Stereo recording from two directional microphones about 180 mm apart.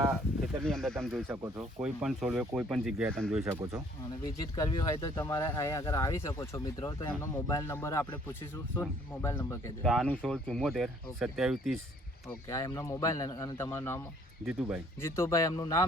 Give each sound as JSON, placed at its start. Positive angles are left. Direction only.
{"t": 0.6, "sound": "speech", "side_deg": 0}
{"t": 4.4, "sound": "speech", "side_deg": 20}
{"t": 9.8, "sound": "speech", "side_deg": 0}
{"t": 12.5, "sound": "speech", "side_deg": 20}
{"t": 15.0, "sound": "speech", "side_deg": 15}